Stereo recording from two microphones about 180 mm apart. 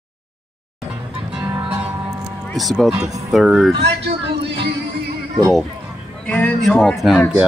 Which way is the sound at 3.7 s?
65° right (ahead or behind).